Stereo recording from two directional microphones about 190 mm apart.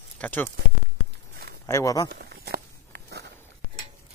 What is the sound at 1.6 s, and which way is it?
Speech, 15° left (ahead or behind).